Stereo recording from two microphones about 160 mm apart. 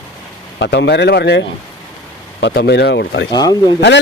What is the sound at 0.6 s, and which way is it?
Speech, 90° left.